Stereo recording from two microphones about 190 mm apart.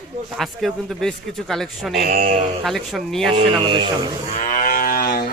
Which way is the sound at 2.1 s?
45° right (ahead or behind).